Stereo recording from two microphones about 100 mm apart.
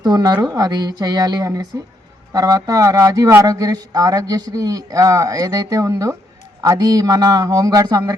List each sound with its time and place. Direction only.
0.0 s a woman's voice: 45° right (ahead or behind)